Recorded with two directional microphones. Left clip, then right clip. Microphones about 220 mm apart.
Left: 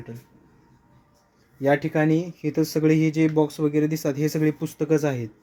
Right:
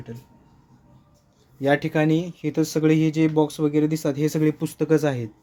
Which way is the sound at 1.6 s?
Centre (ahead or behind).